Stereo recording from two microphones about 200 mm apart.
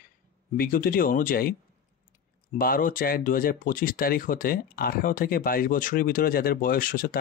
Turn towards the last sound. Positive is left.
turn(degrees=45)  # may be behind; listen again after turning